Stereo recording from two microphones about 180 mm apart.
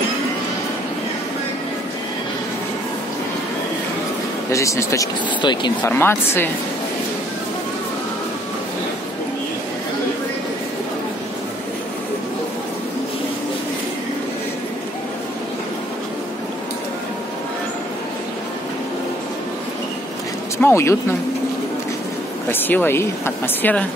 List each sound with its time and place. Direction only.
4.5 s speech: 15° left (ahead or behind)
5.9 s speech: 15° left (ahead or behind)
20.5 s speech: 15° left (ahead or behind)
22.5 s speech: 10° left (ahead or behind)